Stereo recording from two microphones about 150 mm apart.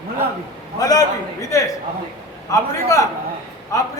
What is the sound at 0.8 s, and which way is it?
A man's voice, 25° left (ahead or behind).